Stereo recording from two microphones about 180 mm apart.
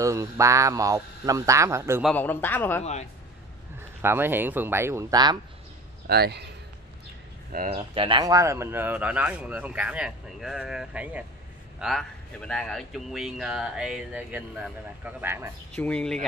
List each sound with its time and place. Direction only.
0.0 s speech: 15° right (ahead or behind)
2.0 s a man's voice: 10° left (ahead or behind)
2.8 s speech: 40° left (ahead or behind)
4.0 s speech: 10° right (ahead or behind)
6.0 s a man's voice: 60° right (ahead or behind)
7.7 s speech: 30° right (ahead or behind); by 15.5 s 15° right (ahead or behind)
15.7 s speech: 5° left (ahead or behind)